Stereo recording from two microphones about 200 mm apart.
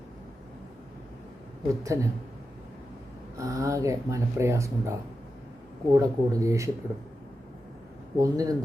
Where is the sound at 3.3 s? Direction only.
15° right (ahead or behind).